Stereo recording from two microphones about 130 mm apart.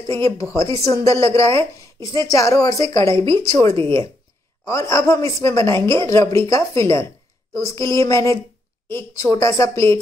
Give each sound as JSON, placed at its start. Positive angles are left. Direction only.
{"t": 0.2, "sound": "a woman's voice", "side_deg": 25}